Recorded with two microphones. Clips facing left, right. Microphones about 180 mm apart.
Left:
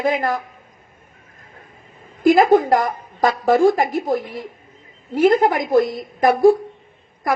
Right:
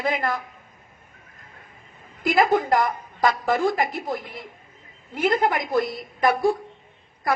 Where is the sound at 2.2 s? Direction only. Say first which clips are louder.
Left 7 dB; 45° left (ahead or behind).